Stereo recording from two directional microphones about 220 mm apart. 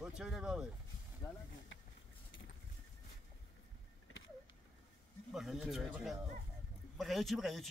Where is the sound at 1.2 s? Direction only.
15° left (ahead or behind).